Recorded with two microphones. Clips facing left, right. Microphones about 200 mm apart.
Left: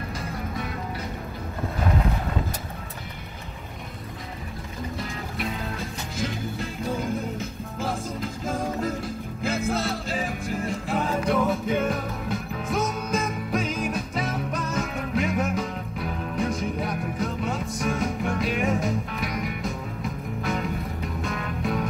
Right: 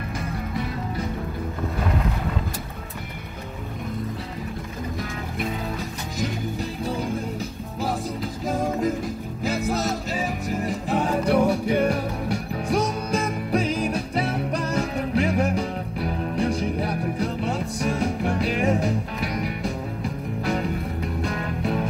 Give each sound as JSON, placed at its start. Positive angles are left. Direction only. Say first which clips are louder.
{"t": 7.3, "sound": "music", "louder": "right 2 dB", "side_deg": -40}
{"t": 11.3, "sound": "music", "louder": "right 5 dB", "side_deg": -15}
{"t": 12.7, "sound": "music", "louder": "right 3 dB", "side_deg": -35}